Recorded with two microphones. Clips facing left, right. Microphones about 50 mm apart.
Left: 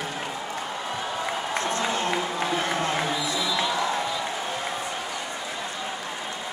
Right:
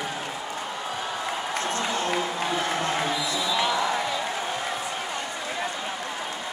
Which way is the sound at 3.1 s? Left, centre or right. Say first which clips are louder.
Even; left.